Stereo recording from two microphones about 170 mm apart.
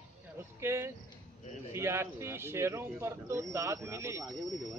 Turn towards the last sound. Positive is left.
turn(degrees=-15)  # may be behind; listen again after turning